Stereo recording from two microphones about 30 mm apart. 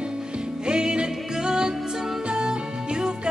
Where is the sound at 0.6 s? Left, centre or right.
Right.